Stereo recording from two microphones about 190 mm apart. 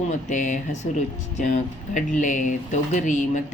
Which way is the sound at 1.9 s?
40° left (ahead or behind).